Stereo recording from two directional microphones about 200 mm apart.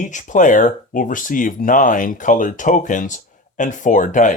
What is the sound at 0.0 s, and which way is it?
Speech, 40° left (ahead or behind).